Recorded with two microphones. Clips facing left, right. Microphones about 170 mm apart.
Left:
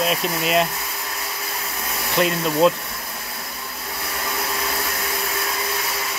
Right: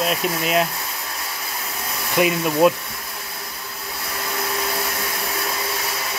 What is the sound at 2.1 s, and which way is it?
Speech, 10° right (ahead or behind).